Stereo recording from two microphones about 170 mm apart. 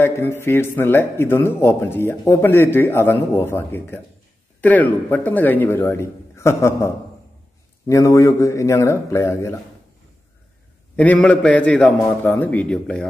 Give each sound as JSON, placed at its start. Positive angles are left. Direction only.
{"t": 0.0, "sound": "a man's voice", "side_deg": 15}
{"t": 7.9, "sound": "a man's voice", "side_deg": 20}
{"t": 11.0, "sound": "a man's voice", "side_deg": 10}